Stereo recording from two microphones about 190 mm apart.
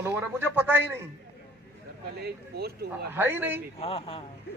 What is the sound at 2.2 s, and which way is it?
Speech, 55° right (ahead or behind).